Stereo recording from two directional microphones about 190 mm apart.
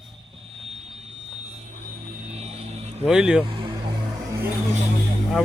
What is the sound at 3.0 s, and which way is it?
Speech, 5° right (ahead or behind).